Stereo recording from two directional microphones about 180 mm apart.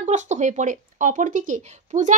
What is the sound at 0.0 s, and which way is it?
Speech, 40° right (ahead or behind).